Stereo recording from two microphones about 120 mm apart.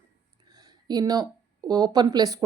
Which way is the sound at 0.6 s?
35° right (ahead or behind).